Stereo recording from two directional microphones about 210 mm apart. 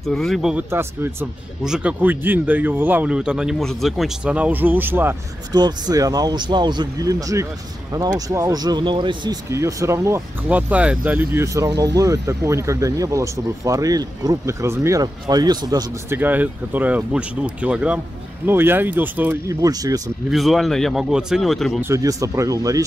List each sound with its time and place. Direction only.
0.0 s speech: centre (ahead or behind); by 20.0 s 15° right (ahead or behind)
20.2 s speech: centre (ahead or behind)
21.8 s speech: 15° right (ahead or behind)